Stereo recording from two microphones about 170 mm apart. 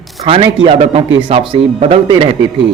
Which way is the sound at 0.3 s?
30° right (ahead or behind).